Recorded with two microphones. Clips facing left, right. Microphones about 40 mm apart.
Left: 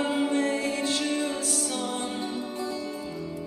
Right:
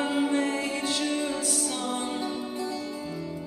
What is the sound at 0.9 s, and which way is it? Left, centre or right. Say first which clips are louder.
Music: left 1 dB; centre.